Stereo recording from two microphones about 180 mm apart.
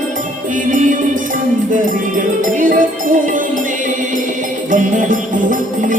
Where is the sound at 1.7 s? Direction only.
50° right (ahead or behind).